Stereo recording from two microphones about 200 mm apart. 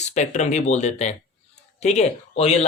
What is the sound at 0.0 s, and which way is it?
Speech, 35° left (ahead or behind).